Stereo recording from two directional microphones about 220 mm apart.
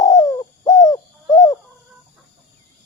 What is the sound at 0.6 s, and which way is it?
Owl, 15° left (ahead or behind).